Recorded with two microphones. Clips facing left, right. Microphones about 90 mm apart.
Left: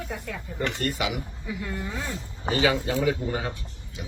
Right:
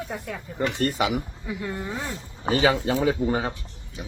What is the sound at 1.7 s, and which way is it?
Speech, 15° right (ahead or behind).